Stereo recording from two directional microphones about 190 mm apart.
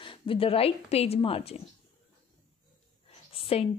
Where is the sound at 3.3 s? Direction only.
30° left (ahead or behind).